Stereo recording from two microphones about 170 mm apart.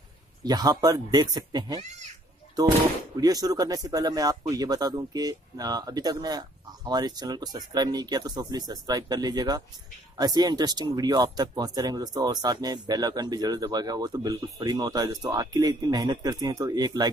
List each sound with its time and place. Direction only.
0.4 s speech: 25° right (ahead or behind)
1.8 s speech: 40° right (ahead or behind)
2.6 s speech: 20° right (ahead or behind)